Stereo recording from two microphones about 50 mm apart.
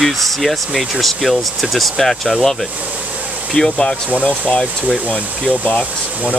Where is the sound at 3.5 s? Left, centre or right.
Centre.